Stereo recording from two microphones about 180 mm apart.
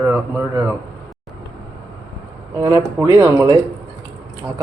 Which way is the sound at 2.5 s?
20° right (ahead or behind).